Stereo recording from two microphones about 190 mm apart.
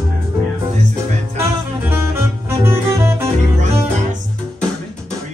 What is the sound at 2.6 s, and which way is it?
Music, 15° right (ahead or behind).